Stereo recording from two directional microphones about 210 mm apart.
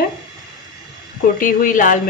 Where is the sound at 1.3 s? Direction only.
40° left (ahead or behind).